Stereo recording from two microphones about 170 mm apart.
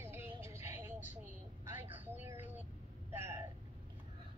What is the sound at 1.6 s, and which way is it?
Vehicle, 15° right (ahead or behind).